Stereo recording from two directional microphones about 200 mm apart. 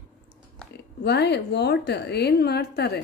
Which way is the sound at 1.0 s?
55° left (ahead or behind).